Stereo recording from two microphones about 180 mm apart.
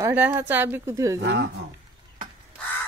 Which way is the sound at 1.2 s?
80° right.